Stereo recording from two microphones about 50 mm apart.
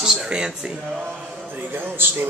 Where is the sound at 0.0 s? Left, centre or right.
Centre.